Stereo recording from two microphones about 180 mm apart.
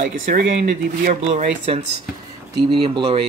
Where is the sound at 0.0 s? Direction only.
50° right (ahead or behind).